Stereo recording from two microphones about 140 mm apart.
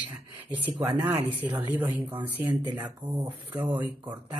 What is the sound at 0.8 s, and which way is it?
Speech, 15° right (ahead or behind).